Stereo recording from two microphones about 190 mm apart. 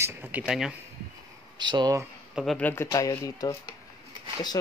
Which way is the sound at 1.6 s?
25° right (ahead or behind).